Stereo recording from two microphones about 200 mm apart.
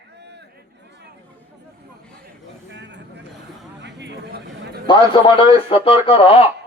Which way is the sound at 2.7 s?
60° right (ahead or behind).